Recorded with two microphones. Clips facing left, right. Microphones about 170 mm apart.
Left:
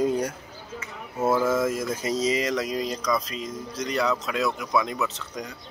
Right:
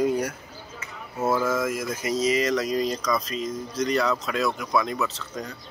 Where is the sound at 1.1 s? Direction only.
10° left (ahead or behind).